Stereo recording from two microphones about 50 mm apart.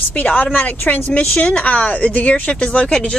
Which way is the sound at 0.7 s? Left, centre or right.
Left.